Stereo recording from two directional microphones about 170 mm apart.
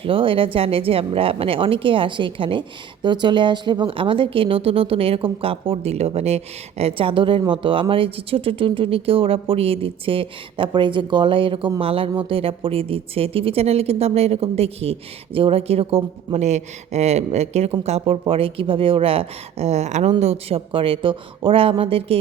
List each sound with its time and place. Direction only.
0.0 s speech: 30° right (ahead or behind)